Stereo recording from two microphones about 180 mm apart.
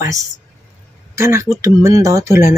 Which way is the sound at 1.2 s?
15° right (ahead or behind).